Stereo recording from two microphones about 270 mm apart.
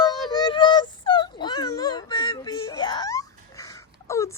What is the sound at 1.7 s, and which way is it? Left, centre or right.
Wail, centre.